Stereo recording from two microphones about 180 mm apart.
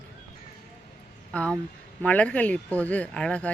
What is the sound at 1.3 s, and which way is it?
Speech, 5° left (ahead or behind).